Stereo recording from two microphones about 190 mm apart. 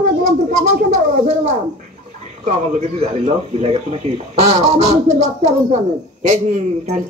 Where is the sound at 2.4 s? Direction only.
35° right (ahead or behind).